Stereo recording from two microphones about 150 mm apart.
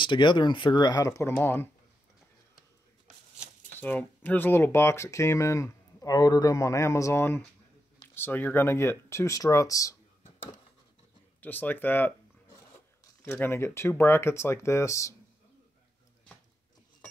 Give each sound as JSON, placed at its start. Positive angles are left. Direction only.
{"t": 0.0, "sound": "speech", "side_deg": 30}
{"t": 3.8, "sound": "speech", "side_deg": 10}
{"t": 11.4, "sound": "speech", "side_deg": 10}
{"t": 13.2, "sound": "speech", "side_deg": 15}